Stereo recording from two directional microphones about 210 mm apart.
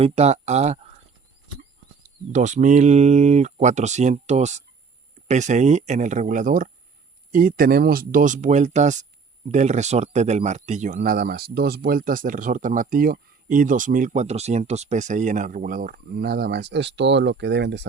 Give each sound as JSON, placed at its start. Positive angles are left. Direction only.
{"t": 0.0, "sound": "speech", "side_deg": -30}
{"t": 2.0, "sound": "speech", "side_deg": -35}